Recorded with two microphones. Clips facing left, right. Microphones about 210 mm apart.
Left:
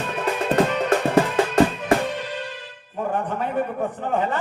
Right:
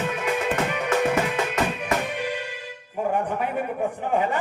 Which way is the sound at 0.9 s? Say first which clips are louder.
Left 3 dB; 30° left (ahead or behind).